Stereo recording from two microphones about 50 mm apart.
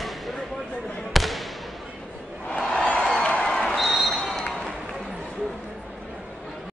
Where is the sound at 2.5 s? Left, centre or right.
Centre.